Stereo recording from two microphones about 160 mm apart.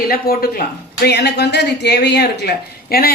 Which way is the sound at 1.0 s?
90° left.